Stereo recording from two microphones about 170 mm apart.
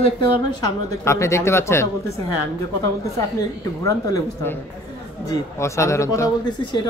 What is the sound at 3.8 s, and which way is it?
Speech, 15° left (ahead or behind).